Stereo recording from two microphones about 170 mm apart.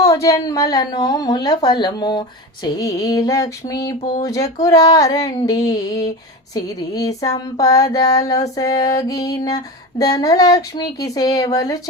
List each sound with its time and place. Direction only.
0.0 s female singing: 20° left (ahead or behind)